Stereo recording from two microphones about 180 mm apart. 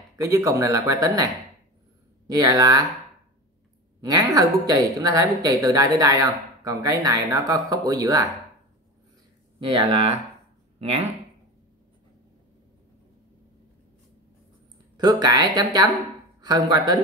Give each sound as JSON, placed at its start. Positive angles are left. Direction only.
{"t": 0.2, "sound": "speech", "side_deg": -15}
{"t": 4.0, "sound": "speech", "side_deg": -20}
{"t": 9.6, "sound": "speech", "side_deg": -30}
{"t": 15.0, "sound": "speech", "side_deg": -20}